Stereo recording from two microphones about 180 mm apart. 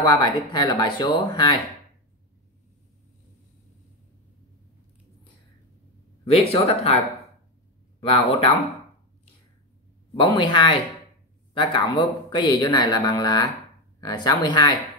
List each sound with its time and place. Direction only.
0.0 s a man's voice: 25° left (ahead or behind)
6.5 s speech: 35° left (ahead or behind)
8.0 s speech: 30° left (ahead or behind)
10.1 s a man's voice: 25° left (ahead or behind)